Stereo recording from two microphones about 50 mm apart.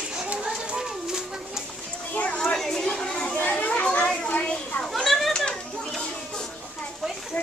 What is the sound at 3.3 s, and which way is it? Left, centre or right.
Children playing, left.